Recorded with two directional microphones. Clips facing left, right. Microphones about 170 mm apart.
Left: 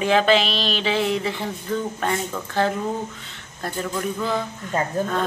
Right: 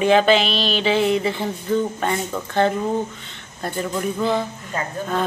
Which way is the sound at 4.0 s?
25° right (ahead or behind).